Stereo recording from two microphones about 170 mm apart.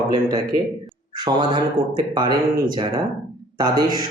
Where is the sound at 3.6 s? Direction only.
25° right (ahead or behind).